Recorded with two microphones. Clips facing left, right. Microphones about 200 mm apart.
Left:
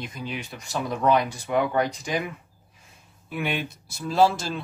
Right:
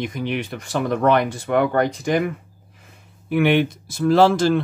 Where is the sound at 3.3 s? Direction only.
70° right (ahead or behind); by 4.6 s 85° right.